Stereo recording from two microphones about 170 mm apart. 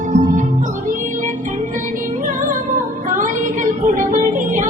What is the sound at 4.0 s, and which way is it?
Music, 50° right (ahead or behind).